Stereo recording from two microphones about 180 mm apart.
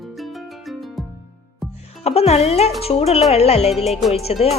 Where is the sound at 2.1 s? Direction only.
35° left (ahead or behind).